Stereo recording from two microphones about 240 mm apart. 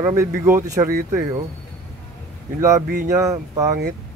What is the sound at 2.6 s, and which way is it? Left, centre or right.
Speech, centre.